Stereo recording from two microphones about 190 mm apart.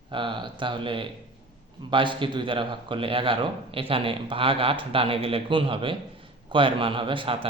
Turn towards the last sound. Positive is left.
turn(degrees=-25)  # may be behind; listen again after turning